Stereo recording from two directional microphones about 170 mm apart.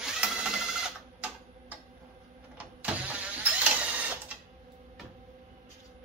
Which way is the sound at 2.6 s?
10° right (ahead or behind).